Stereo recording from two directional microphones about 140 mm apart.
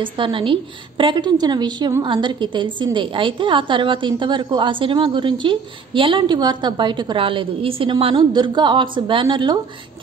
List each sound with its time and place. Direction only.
0.0 s a woman's voice: 40° right (ahead or behind)